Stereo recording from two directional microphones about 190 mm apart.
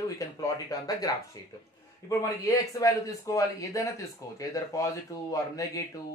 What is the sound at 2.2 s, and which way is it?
A man's voice, 20° left (ahead or behind).